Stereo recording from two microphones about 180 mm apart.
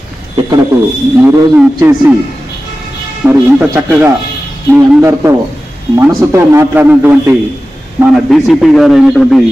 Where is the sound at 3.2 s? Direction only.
10° right (ahead or behind).